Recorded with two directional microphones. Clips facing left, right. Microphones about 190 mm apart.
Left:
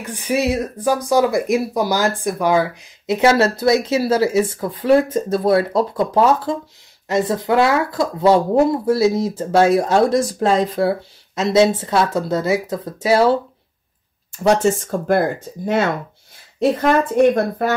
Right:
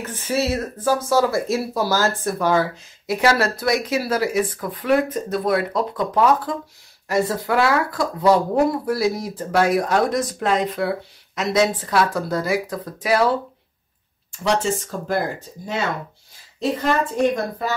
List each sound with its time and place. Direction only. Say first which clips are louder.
0.0 s speech: left 3 dB; 15° left (ahead or behind)
14.4 s speech: left 6 dB; 50° left (ahead or behind)